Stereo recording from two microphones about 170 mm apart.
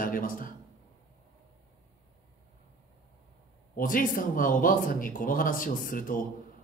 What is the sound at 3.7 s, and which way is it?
Speech, 55° left (ahead or behind).